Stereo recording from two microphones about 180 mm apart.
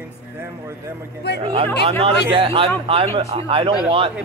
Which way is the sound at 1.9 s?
30° right (ahead or behind).